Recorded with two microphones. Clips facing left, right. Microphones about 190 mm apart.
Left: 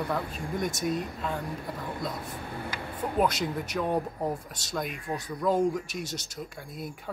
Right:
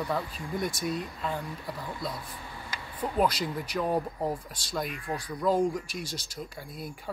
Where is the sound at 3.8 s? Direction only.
Centre (ahead or behind).